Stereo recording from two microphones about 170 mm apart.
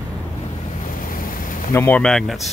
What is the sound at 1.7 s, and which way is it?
Speech, 15° left (ahead or behind).